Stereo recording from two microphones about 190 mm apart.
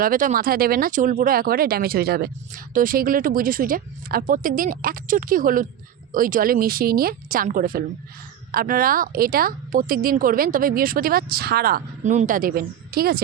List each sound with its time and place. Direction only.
0.0 s a woman's voice: 45° right (ahead or behind)